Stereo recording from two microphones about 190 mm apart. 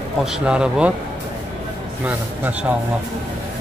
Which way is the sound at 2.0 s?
5° right (ahead or behind).